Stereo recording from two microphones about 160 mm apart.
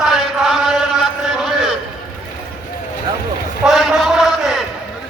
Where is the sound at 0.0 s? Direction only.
Centre (ahead or behind).